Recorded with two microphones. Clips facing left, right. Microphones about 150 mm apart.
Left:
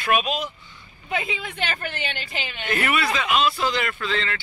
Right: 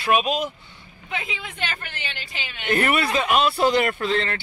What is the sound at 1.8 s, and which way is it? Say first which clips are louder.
Speech: left 5 dB; 45° left (ahead or behind).